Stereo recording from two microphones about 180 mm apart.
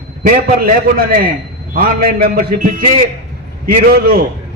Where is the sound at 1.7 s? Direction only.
55° right (ahead or behind).